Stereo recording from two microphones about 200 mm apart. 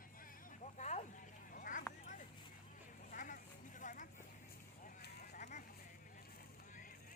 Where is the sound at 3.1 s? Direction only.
40° left (ahead or behind).